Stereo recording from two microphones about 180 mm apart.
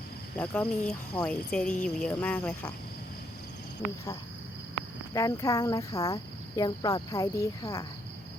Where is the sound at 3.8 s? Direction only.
40° left (ahead or behind).